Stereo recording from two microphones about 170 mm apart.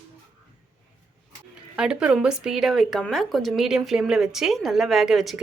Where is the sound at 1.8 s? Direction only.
5° right (ahead or behind).